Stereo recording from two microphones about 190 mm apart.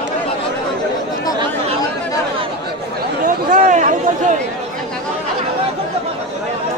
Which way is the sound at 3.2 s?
45° right (ahead or behind).